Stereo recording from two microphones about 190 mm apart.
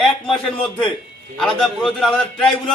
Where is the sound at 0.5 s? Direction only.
5° left (ahead or behind).